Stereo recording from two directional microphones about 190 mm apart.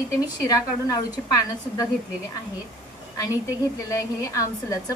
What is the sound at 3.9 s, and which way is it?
Speech, 15° left (ahead or behind).